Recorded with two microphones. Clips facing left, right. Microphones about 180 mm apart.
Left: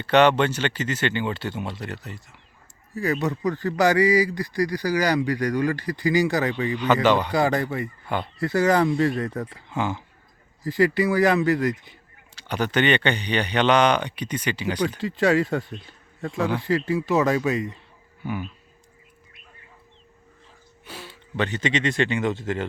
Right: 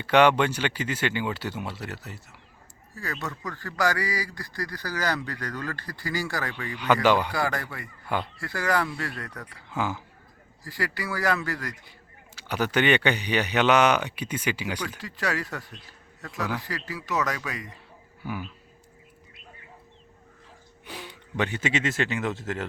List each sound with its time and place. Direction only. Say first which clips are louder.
0.0 s speech: left 2 dB; 10° right (ahead or behind)
2.9 s a man's voice: left 10 dB; 20° left (ahead or behind)
6.7 s speech: left 1 dB; 10° right (ahead or behind)
7.3 s speech: left 7 dB; 25° left (ahead or behind)
9.6 s speech: left 1 dB; 5° right (ahead or behind)
10.6 s speech: left 12 dB; 20° left (ahead or behind)
12.3 s speech: left 2 dB; 10° right (ahead or behind)
14.8 s speech: left 10 dB; 25° left (ahead or behind)
18.2 s speech: left 4 dB; 5° right (ahead or behind)
20.8 s speech: even; 15° right (ahead or behind)